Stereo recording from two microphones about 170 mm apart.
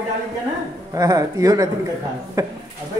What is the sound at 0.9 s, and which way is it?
A man's voice, 20° right (ahead or behind).